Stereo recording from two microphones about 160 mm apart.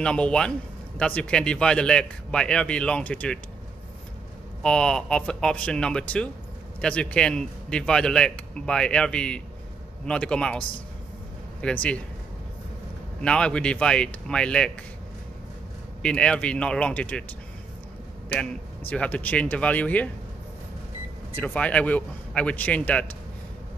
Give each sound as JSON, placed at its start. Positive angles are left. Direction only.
{"t": 0.0, "sound": "a man's voice", "side_deg": 5}
{"t": 4.6, "sound": "a man's voice", "side_deg": 5}
{"t": 11.6, "sound": "speech", "side_deg": 10}
{"t": 13.2, "sound": "a man's voice", "side_deg": 5}
{"t": 16.0, "sound": "speech", "side_deg": 5}
{"t": 18.3, "sound": "speech", "side_deg": 10}
{"t": 21.4, "sound": "speech", "side_deg": 10}